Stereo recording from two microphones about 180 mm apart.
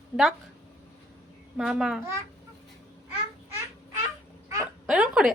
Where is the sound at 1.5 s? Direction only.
5° right (ahead or behind).